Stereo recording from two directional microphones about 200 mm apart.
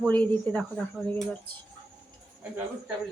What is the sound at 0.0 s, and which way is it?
Speech, 5° left (ahead or behind).